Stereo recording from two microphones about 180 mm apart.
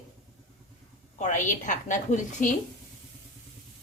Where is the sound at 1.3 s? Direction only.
45° left (ahead or behind).